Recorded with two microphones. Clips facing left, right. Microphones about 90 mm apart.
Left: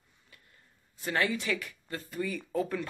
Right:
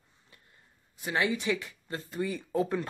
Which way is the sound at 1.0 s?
15° right (ahead or behind).